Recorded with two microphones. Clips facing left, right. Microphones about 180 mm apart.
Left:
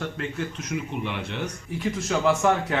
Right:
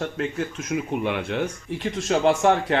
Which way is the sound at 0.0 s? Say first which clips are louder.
Right 3 dB; 45° right (ahead or behind).